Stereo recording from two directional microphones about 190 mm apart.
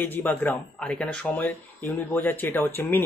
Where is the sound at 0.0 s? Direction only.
10° left (ahead or behind).